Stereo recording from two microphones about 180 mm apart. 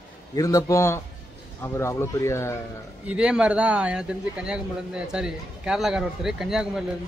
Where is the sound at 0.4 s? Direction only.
20° left (ahead or behind).